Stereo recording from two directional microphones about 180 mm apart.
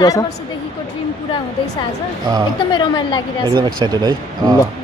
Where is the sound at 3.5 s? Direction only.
25° right (ahead or behind).